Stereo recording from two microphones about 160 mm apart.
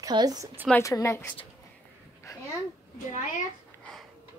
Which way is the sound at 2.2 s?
20° left (ahead or behind).